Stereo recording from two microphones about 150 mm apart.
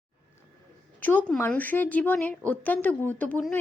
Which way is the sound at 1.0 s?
10° left (ahead or behind).